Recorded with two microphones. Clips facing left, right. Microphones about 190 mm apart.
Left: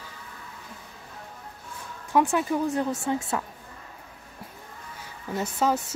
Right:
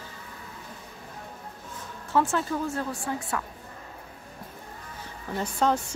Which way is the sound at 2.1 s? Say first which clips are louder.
Left 2 dB; 15° left (ahead or behind).